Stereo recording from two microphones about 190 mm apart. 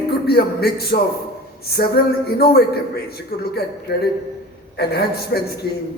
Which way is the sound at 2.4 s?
55° left (ahead or behind).